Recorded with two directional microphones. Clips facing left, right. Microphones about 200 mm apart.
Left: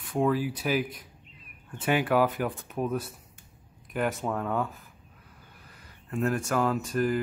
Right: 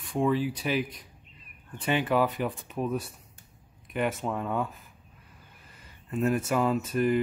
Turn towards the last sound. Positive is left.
turn(degrees=0)  # may be behind; listen again after turning